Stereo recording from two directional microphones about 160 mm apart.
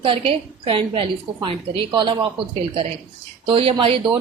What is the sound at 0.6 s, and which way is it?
A woman's voice, 35° right (ahead or behind).